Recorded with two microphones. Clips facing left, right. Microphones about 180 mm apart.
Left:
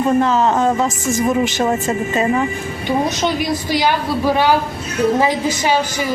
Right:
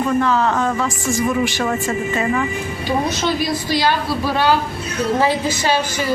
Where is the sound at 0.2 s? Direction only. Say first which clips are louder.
Left 3 dB; 25° left (ahead or behind).